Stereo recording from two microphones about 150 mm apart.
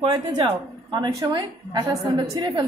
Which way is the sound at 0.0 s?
30° right (ahead or behind).